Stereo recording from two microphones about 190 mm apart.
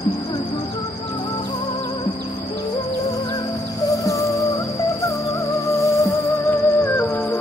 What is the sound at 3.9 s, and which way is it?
Music, 15° left (ahead or behind).